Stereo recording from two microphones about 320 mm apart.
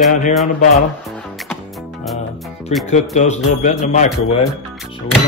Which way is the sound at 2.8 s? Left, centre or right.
Left.